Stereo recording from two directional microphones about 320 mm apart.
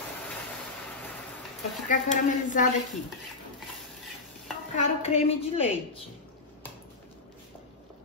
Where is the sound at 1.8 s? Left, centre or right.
Left.